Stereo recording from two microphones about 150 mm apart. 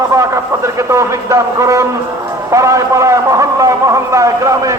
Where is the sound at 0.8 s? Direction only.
20° right (ahead or behind).